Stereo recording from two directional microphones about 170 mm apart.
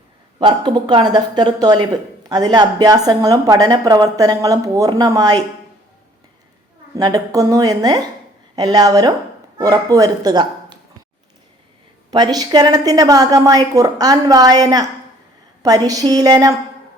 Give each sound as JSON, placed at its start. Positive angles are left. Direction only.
{"t": 0.3, "sound": "a woman's voice", "side_deg": -25}
{"t": 6.9, "sound": "a woman's voice", "side_deg": -20}
{"t": 12.1, "sound": "a woman's voice", "side_deg": -25}